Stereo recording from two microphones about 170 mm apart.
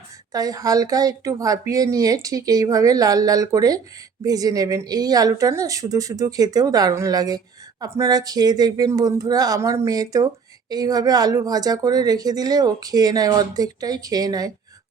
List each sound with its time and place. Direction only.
0.3 s speech: 20° right (ahead or behind)